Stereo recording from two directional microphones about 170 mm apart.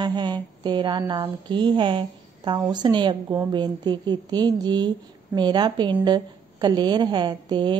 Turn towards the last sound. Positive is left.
turn(degrees=-25)  # may be behind; listen again after turning